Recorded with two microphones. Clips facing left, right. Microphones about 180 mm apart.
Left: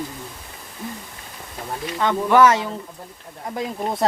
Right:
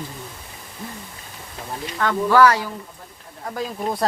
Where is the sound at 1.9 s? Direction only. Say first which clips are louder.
Even; 20° left (ahead or behind).